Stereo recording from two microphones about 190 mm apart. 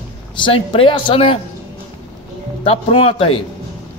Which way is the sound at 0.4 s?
25° left (ahead or behind).